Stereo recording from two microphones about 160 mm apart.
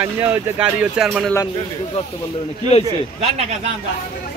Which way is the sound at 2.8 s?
40° right (ahead or behind).